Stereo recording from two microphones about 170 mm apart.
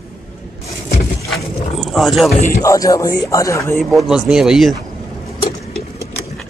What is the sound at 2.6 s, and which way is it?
Speech, 20° left (ahead or behind).